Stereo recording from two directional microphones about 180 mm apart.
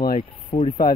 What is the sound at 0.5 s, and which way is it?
Speech, 20° left (ahead or behind).